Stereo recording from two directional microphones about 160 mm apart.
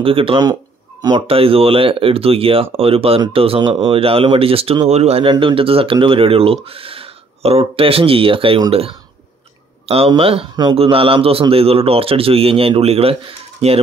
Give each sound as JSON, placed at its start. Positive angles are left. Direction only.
{"t": 0.0, "sound": "a man's voice", "side_deg": -35}